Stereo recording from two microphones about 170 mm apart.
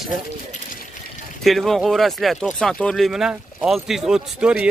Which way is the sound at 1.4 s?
Centre (ahead or behind).